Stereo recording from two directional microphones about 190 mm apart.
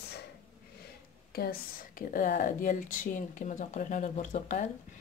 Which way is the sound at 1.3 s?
55° left (ahead or behind).